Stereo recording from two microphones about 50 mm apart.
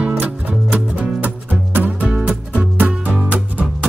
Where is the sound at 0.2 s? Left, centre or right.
Right.